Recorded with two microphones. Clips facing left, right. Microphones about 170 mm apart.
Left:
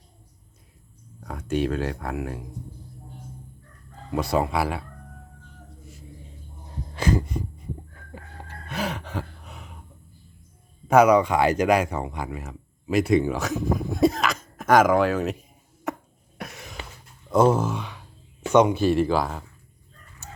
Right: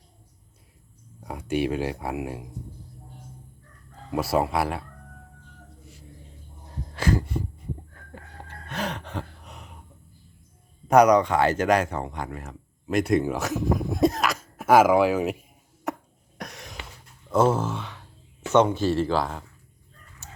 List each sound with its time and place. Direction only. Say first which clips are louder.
1.2 s speech: even; 10° right (ahead or behind)
4.1 s speech: even; 5° right (ahead or behind)
6.9 s heart sounds: left 1 dB; 20° left (ahead or behind)
8.1 s gasp: left 1 dB; 10° left (ahead or behind)
10.8 s speech: even; 5° left (ahead or behind)
16.4 s a sound: left 1 dB; centre (ahead or behind)
17.2 s speech: left 2 dB; 15° left (ahead or behind)